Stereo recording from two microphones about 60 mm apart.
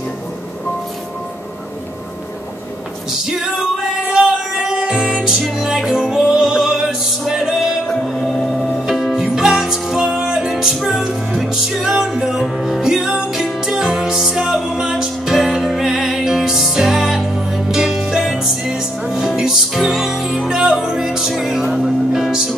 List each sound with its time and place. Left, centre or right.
3.1 s music: centre
7.8 s music: centre